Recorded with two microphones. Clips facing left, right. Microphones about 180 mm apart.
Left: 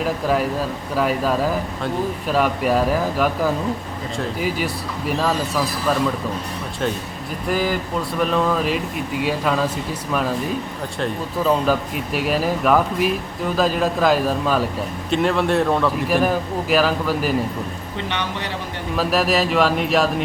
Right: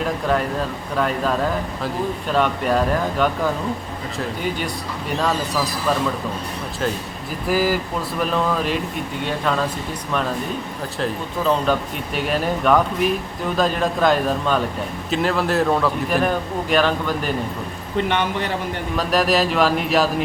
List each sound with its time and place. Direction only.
0.0 s speech: 5° left (ahead or behind)
7.4 s speech: 5° right (ahead or behind)
11.0 s speech: 5° left (ahead or behind)
18.1 s speech: 50° right (ahead or behind)
18.9 s speech: centre (ahead or behind)